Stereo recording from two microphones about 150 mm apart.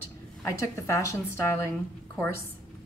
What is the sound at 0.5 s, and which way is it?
Speech, 20° left (ahead or behind).